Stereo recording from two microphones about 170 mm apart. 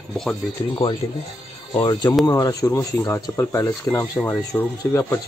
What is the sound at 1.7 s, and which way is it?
Speech, 20° left (ahead or behind).